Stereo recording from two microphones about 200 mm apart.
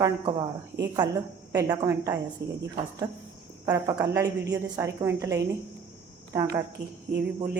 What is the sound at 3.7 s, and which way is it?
Speech, 15° right (ahead or behind).